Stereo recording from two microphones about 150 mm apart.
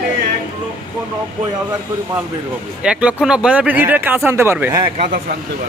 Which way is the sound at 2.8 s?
5° right (ahead or behind).